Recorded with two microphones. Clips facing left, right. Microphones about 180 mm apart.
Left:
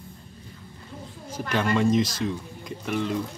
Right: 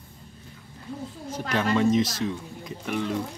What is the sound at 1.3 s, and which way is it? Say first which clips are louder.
Speech: even; centre (ahead or behind).